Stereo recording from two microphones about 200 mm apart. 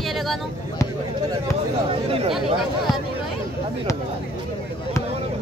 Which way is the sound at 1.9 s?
30° right (ahead or behind).